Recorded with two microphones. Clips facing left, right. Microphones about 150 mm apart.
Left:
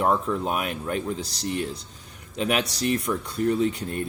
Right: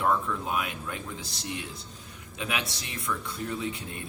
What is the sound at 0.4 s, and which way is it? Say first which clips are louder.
Speech: left 5 dB; 45° left (ahead or behind).